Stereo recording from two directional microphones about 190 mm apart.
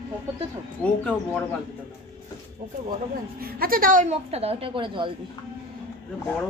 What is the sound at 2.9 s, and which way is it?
A woman's voice, 50° right (ahead or behind).